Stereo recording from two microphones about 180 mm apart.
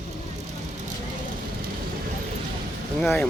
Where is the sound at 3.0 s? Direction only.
10° left (ahead or behind).